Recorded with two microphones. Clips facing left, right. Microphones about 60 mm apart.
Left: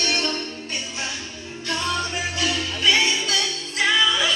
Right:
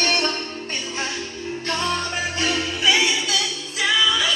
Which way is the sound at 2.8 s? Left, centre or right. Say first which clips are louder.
Even; centre.